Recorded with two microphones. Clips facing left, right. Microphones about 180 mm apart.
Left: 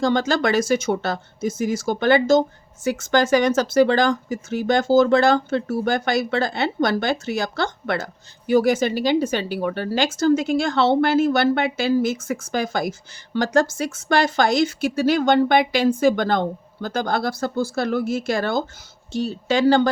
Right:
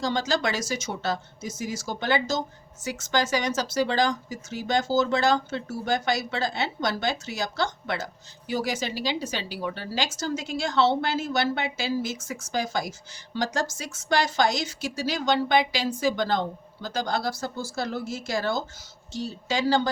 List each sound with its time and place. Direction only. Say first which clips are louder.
0.0 s speech: left 6 dB; 55° left (ahead or behind)